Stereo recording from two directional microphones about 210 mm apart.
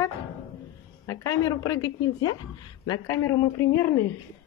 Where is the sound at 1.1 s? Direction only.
15° left (ahead or behind).